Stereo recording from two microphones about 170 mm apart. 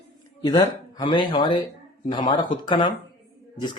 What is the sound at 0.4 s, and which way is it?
Speech, 25° left (ahead or behind).